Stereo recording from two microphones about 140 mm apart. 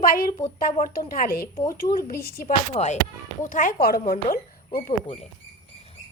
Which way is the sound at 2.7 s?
55° left (ahead or behind).